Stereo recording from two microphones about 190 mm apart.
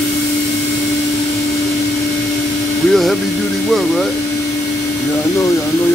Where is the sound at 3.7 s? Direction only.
Centre (ahead or behind).